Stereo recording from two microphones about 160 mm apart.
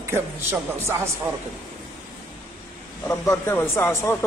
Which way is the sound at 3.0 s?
15° left (ahead or behind).